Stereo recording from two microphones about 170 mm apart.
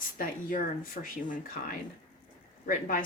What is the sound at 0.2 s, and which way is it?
Speech, 55° left (ahead or behind).